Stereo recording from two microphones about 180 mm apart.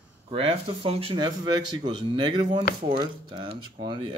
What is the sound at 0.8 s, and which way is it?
Speech, 30° right (ahead or behind).